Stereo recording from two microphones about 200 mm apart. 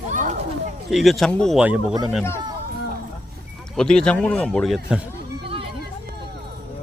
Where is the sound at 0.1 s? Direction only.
40° right (ahead or behind).